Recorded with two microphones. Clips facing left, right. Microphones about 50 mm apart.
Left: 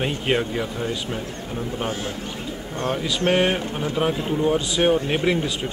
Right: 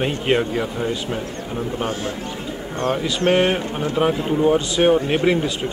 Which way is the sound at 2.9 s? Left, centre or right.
Centre.